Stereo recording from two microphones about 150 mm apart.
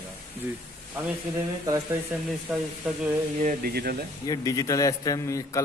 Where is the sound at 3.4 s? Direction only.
90° right.